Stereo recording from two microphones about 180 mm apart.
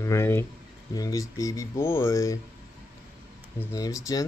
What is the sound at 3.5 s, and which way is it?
Speech, 20° left (ahead or behind).